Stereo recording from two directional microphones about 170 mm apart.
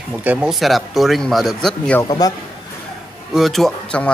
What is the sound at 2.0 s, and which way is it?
Speech, 20° left (ahead or behind).